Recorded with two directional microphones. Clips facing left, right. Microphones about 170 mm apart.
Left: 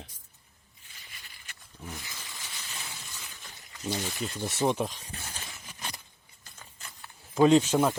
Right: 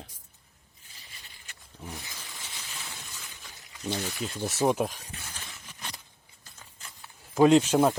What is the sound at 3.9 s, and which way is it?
Speech, 10° right (ahead or behind).